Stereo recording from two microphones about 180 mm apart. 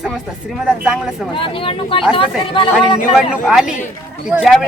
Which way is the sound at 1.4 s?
30° left (ahead or behind).